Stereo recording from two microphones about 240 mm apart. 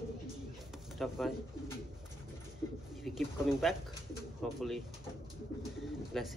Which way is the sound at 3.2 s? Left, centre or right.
Centre.